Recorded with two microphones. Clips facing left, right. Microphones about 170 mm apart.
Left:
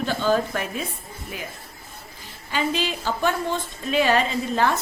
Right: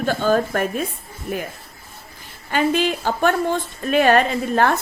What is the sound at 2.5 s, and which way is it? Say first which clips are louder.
A woman's voice: right 6 dB; 55° right (ahead or behind).